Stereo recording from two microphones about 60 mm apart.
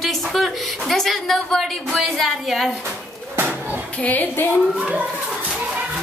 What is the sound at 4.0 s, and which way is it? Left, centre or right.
Speech, left.